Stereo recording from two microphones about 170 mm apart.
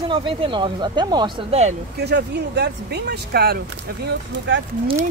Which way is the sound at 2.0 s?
75° right (ahead or behind).